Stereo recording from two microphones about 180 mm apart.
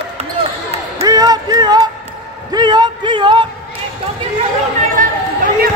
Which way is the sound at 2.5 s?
25° right (ahead or behind).